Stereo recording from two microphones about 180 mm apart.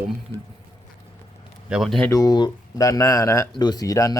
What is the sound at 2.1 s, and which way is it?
Speech, 20° left (ahead or behind).